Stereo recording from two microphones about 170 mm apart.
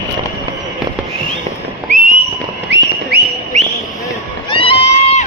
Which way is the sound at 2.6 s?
90° right.